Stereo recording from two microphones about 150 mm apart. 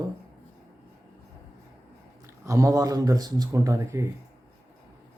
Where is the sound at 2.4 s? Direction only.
20° right (ahead or behind).